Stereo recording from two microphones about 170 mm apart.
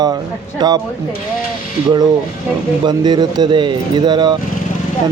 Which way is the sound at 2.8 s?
25° right (ahead or behind).